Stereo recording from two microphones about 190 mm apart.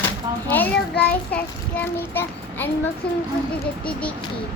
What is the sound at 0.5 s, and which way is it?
Child singing, 10° left (ahead or behind).